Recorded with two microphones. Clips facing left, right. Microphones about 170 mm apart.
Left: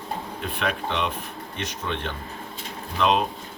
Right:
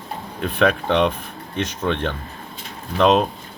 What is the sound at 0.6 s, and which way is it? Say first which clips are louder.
Speech: right 10 dB; 60° right (ahead or behind).